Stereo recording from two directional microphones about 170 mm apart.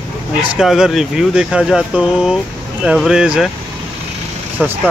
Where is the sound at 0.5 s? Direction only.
Centre (ahead or behind).